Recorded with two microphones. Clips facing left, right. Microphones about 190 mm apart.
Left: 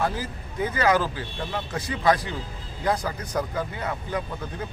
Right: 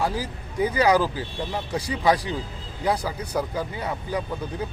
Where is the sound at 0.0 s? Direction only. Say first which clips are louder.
Right 1 dB; 10° right (ahead or behind).